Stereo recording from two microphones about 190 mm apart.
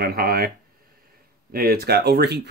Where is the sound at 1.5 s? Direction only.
50° right (ahead or behind).